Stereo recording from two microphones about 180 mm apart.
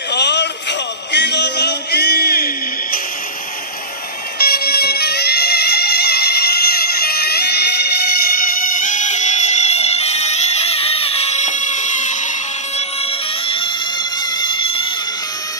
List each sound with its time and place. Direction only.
0.1 s music: 70° left (ahead or behind); by 3.0 s 55° left (ahead or behind)
4.4 s music: 60° left (ahead or behind)
8.5 s music: 50° left (ahead or behind); by 14.9 s 30° left (ahead or behind)